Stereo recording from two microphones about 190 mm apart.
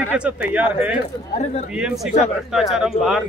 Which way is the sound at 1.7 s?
5° right (ahead or behind).